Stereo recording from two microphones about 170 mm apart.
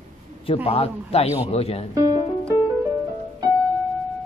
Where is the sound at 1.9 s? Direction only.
20° right (ahead or behind).